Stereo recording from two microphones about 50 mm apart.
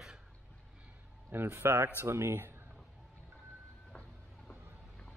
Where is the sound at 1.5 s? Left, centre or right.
Right.